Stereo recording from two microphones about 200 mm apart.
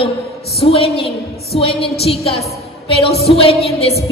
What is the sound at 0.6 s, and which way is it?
A woman's voice, 30° left (ahead or behind).